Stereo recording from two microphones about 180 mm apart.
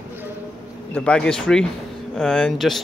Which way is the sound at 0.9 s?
5° left (ahead or behind).